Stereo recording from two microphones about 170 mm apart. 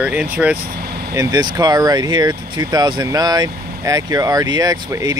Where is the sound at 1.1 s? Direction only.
20° right (ahead or behind).